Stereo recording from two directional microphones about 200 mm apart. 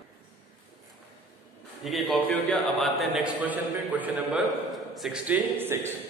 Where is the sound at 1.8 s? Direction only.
Centre (ahead or behind).